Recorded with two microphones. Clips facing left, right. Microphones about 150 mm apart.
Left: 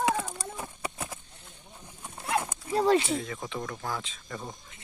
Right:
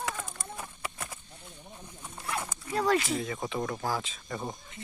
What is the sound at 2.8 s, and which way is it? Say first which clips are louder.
Speech: left 3 dB; 30° left (ahead or behind).